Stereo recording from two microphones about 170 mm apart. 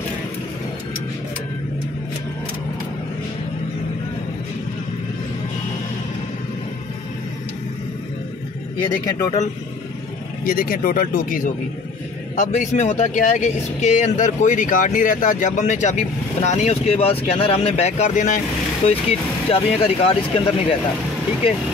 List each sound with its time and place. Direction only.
8.8 s speech: 25° left (ahead or behind)
10.4 s speech: 55° left (ahead or behind)
12.5 s speech: 45° left (ahead or behind)
18.9 s speech: 35° left (ahead or behind)